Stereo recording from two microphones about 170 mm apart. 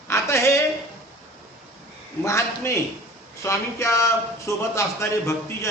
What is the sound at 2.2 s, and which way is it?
A man's voice, 15° left (ahead or behind).